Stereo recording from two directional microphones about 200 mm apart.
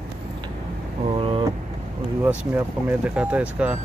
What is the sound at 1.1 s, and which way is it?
Vehicle, 25° right (ahead or behind).